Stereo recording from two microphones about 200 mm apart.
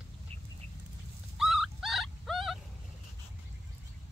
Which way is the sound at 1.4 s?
Centre (ahead or behind).